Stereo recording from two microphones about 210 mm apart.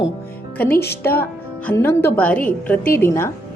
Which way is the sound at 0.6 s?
50° left (ahead or behind).